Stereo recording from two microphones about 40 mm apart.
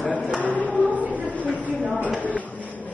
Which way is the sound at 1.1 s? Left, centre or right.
Right.